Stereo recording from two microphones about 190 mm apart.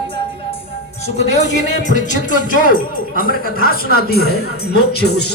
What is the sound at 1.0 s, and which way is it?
Speech, 35° left (ahead or behind).